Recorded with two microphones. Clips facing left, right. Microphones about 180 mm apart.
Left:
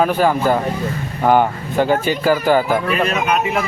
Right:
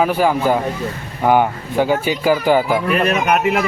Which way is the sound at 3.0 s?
60° right (ahead or behind).